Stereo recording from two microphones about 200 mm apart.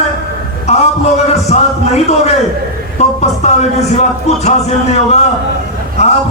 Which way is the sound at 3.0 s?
35° left (ahead or behind).